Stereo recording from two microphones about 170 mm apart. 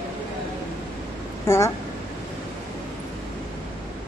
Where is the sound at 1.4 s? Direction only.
15° left (ahead or behind).